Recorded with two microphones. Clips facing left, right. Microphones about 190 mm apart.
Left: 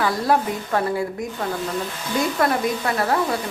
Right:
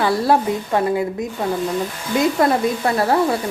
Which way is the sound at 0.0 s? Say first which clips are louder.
Right 3 dB; 30° right (ahead or behind).